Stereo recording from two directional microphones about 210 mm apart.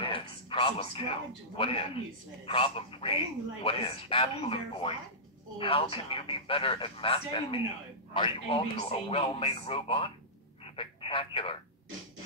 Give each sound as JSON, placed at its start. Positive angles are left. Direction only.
{"t": 0.0, "sound": "music", "side_deg": 25}
{"t": 1.6, "sound": "speech", "side_deg": 25}
{"t": 10.6, "sound": "telephone", "side_deg": 25}